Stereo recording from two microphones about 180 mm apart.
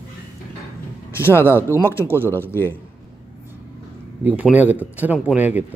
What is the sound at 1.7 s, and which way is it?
A man's voice, 15° left (ahead or behind).